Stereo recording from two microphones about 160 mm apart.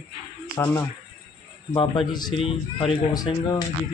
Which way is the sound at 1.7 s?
30° left (ahead or behind).